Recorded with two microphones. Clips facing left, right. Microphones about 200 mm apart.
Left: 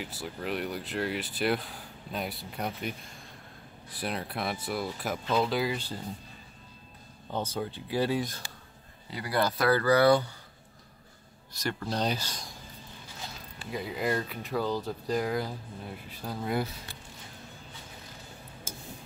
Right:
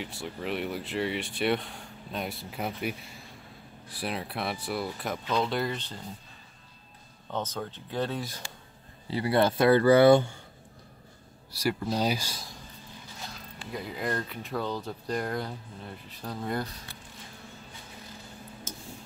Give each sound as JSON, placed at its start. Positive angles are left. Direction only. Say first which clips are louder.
{"t": 0.0, "sound": "speech", "louder": "right 1 dB", "side_deg": 0}
{"t": 7.5, "sound": "speech", "louder": "left 2 dB", "side_deg": 10}
{"t": 9.1, "sound": "speech", "louder": "right 5 dB", "side_deg": -25}
{"t": 11.5, "sound": "speech", "louder": "right 3 dB", "side_deg": -5}
{"t": 13.7, "sound": "speech", "louder": "left 2 dB", "side_deg": 5}